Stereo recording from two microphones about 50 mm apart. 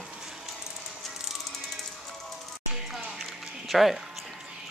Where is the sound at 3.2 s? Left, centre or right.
Centre.